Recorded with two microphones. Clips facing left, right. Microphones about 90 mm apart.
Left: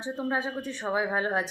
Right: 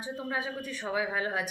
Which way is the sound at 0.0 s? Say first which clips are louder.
Left 4 dB; 30° left (ahead or behind).